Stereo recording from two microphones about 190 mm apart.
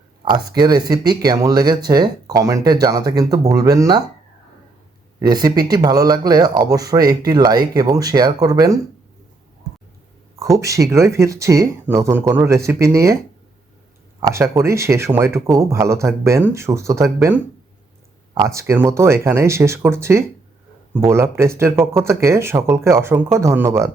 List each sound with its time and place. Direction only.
0.3 s speech: 25° right (ahead or behind)
5.2 s speech: 20° right (ahead or behind)
10.4 s speech: 15° right (ahead or behind)
14.2 s speech: 15° right (ahead or behind)